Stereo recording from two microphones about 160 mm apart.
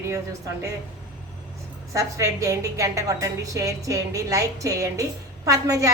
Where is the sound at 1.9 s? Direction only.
20° right (ahead or behind).